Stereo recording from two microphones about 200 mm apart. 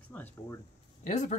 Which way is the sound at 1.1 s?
35° left (ahead or behind).